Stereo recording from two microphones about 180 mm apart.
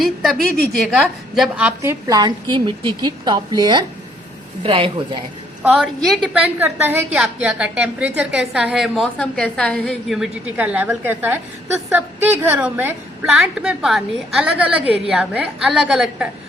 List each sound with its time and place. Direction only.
0.0 s a woman's voice: centre (ahead or behind); by 4.9 s 30° right (ahead or behind)
5.7 s a woman's voice: centre (ahead or behind)